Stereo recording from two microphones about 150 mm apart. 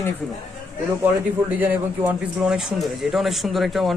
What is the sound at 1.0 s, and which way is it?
A man's voice, 10° right (ahead or behind).